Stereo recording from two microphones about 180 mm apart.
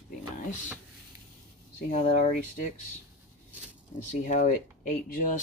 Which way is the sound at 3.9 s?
45° left (ahead or behind).